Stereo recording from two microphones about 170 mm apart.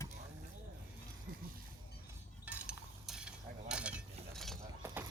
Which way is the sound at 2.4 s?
5° right (ahead or behind).